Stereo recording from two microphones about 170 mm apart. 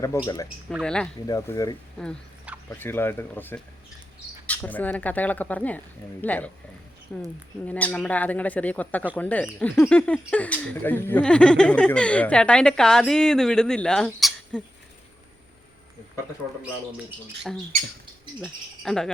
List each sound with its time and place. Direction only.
0.1 s speech: 15° left (ahead or behind)
0.7 s speech: 5° left (ahead or behind)
1.3 s speech: 20° left (ahead or behind); by 14.6 s 5° left (ahead or behind)
18.3 s speech: centre (ahead or behind)